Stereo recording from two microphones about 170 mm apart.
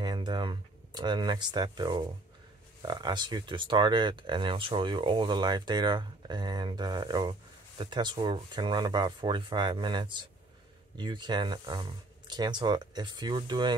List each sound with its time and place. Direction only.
0.0 s speech: 25° right (ahead or behind)